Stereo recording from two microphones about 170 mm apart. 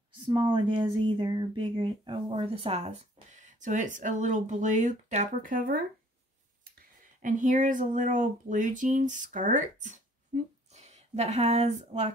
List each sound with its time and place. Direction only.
0.3 s speech: 30° right (ahead or behind)